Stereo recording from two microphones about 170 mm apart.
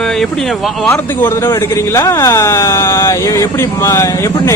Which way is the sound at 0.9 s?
10° left (ahead or behind).